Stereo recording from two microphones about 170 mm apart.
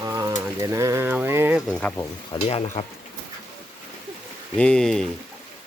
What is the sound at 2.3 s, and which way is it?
Speech, 35° left (ahead or behind).